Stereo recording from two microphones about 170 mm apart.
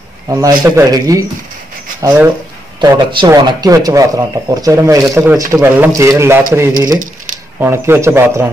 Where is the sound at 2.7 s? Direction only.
25° right (ahead or behind).